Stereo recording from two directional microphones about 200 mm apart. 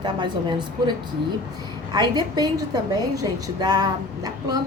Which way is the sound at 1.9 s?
20° right (ahead or behind).